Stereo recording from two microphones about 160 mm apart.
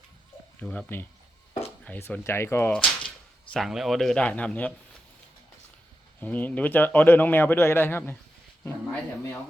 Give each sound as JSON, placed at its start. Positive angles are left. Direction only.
{"t": 0.6, "sound": "speech", "side_deg": 10}
{"t": 3.5, "sound": "a man's voice", "side_deg": 0}
{"t": 6.1, "sound": "speech", "side_deg": 10}